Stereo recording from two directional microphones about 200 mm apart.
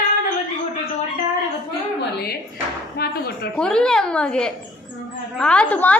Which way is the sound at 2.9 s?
50° left (ahead or behind).